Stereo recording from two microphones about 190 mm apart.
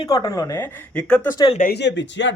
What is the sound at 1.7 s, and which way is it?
Speech, 65° left (ahead or behind).